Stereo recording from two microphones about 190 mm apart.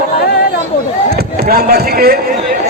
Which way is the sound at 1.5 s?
55° right (ahead or behind).